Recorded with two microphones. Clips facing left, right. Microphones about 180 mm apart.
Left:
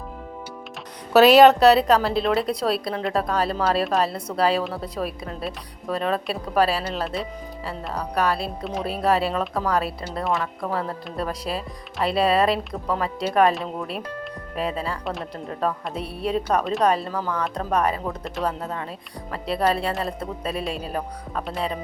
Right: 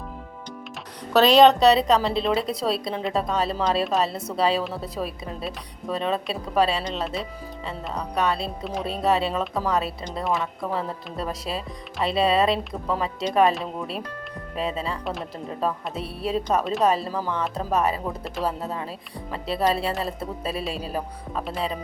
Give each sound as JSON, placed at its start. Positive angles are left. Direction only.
{"t": 1.1, "sound": "speech", "side_deg": 5}